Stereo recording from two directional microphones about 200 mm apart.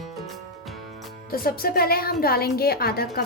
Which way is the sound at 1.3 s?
50° left (ahead or behind).